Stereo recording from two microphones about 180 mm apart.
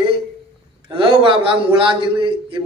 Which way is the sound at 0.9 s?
25° right (ahead or behind).